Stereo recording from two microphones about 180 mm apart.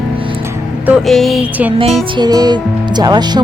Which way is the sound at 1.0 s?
Centre (ahead or behind).